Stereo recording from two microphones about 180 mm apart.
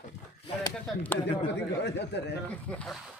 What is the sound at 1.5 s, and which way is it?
Speech, 70° left (ahead or behind).